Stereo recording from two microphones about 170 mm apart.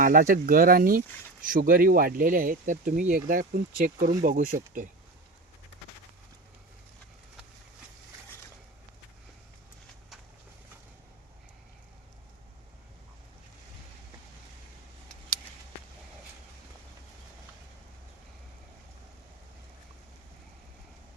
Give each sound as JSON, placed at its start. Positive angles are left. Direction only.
{"t": 0.0, "sound": "speech", "side_deg": -55}